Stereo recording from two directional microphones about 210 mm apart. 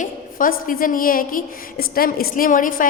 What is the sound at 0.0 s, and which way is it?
A woman's voice, 40° left (ahead or behind).